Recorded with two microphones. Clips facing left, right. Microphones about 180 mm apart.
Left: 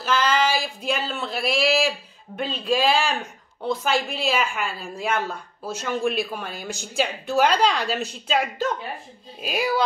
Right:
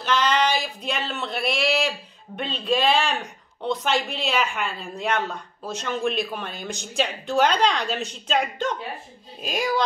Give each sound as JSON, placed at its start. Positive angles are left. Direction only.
{"t": 0.0, "sound": "speech", "side_deg": 5}